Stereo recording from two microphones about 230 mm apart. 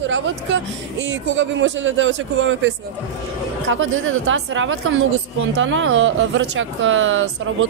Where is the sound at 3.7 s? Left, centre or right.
Right.